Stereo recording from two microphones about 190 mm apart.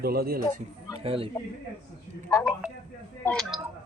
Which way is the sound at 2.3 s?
20° left (ahead or behind).